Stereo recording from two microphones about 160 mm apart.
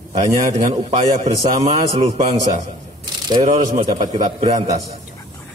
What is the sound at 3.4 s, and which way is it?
A man's voice, 50° right (ahead or behind).